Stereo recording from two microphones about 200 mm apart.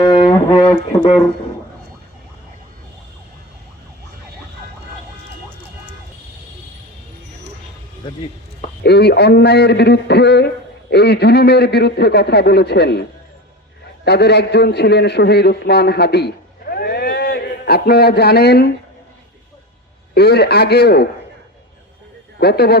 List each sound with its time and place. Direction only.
0.0 s music: 25° left (ahead or behind)
8.8 s a man's voice: 55° left (ahead or behind)
20.1 s a man's voice: 55° left (ahead or behind)
22.4 s a man's voice: 50° left (ahead or behind)